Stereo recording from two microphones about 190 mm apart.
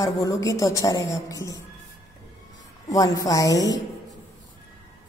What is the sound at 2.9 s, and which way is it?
Speech, 20° left (ahead or behind).